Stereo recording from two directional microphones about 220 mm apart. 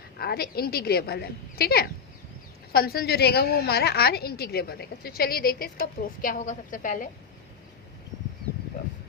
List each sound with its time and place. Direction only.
0.2 s a woman's voice: 45° left (ahead or behind)